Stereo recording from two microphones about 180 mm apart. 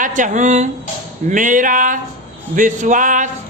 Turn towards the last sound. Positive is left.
turn(degrees=-45)  # may be behind; listen again after turning